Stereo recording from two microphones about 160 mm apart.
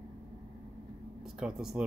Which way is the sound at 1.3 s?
5° right (ahead or behind).